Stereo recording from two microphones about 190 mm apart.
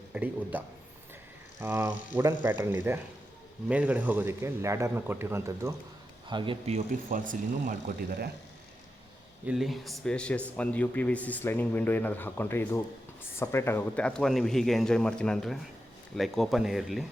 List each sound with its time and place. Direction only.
0.1 s a sound: 10° right (ahead or behind)
1.6 s speech: 10° right (ahead or behind); by 7.8 s 45° right (ahead or behind)
9.5 s a man's voice: centre (ahead or behind)